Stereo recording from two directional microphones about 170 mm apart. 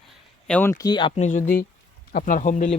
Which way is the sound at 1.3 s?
50° left (ahead or behind).